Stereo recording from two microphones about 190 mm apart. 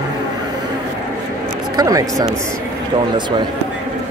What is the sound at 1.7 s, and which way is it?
Speech, 20° right (ahead or behind).